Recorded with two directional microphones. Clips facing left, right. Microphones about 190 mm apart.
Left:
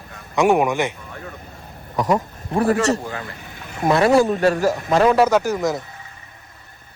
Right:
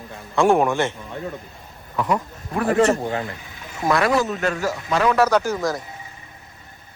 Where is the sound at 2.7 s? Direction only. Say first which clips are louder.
Right 3 dB; 25° right (ahead or behind).